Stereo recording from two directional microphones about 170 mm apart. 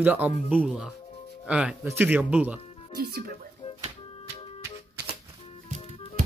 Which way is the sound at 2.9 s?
65° right (ahead or behind).